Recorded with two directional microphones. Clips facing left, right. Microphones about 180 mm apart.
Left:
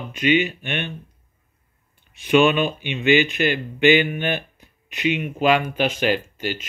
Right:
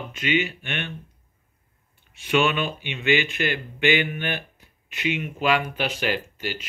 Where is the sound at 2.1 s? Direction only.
15° left (ahead or behind).